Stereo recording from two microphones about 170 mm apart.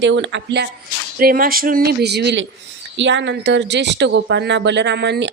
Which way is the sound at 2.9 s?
90° right.